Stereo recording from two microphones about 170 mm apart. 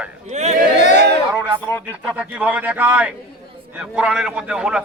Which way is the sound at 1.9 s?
5° right (ahead or behind).